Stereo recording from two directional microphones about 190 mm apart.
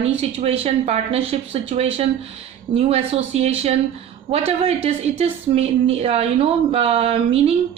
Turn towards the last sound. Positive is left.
turn(degrees=-30)  # may be behind; listen again after turning